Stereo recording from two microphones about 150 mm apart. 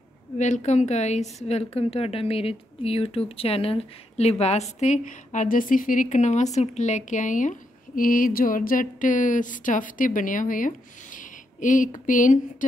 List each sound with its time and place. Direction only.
0.4 s a woman's voice: 50° left (ahead or behind)